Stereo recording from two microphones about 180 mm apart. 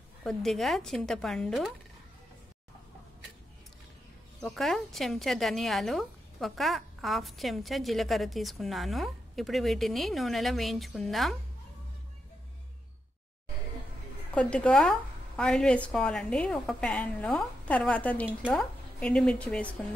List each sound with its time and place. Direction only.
0.2 s speech: centre (ahead or behind)
4.4 s speech: centre (ahead or behind)
14.3 s speech: 5° left (ahead or behind)